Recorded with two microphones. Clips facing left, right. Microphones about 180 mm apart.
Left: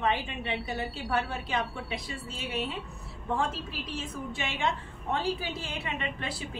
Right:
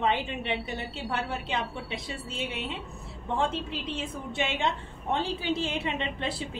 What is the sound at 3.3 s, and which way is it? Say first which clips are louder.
A woman's voice: right 2 dB; 25° right (ahead or behind).